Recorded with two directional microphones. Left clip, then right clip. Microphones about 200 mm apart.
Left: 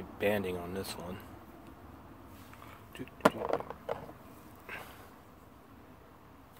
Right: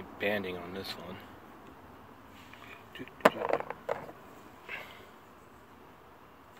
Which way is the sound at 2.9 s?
10° left (ahead or behind).